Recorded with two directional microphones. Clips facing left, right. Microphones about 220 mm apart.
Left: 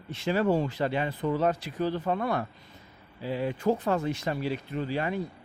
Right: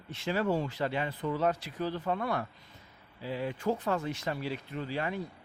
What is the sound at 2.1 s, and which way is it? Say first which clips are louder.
Speech: left 4 dB; 45° left (ahead or behind).